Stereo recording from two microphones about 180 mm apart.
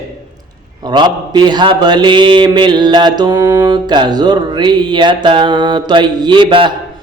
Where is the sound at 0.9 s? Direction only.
25° right (ahead or behind).